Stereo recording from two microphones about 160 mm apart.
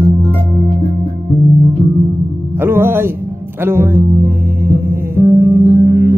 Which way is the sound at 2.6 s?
15° right (ahead or behind).